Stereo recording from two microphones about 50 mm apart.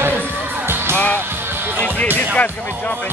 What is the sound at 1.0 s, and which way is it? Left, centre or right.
Speech, left.